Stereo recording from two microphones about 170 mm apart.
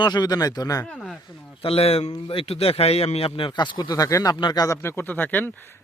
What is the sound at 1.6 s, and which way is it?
A man's voice, 35° left (ahead or behind).